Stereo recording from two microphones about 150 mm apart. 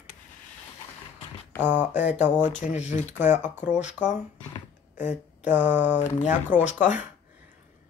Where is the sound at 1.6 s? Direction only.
10° right (ahead or behind).